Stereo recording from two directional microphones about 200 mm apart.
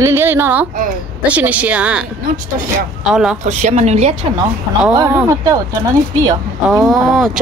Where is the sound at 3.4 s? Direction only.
35° right (ahead or behind).